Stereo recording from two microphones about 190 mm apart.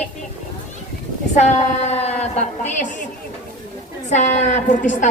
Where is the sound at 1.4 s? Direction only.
35° left (ahead or behind).